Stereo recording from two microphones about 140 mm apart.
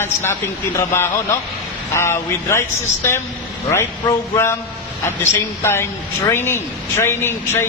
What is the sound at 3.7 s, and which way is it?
A man's voice, 20° left (ahead or behind).